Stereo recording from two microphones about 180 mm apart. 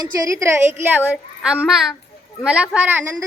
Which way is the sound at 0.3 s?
15° right (ahead or behind).